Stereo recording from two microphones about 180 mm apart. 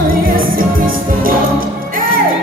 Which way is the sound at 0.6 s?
50° right (ahead or behind).